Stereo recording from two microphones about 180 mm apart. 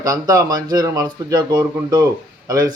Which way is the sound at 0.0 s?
20° right (ahead or behind).